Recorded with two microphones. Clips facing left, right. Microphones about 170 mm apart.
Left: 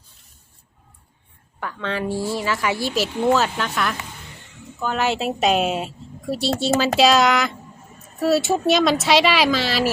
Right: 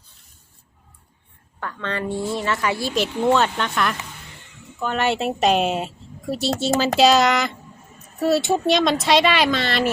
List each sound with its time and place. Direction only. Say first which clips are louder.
1.5 s a woman's voice: left 1 dB; 5° left (ahead or behind)